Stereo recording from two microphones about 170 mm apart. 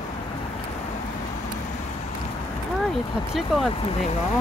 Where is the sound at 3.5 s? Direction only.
Centre (ahead or behind).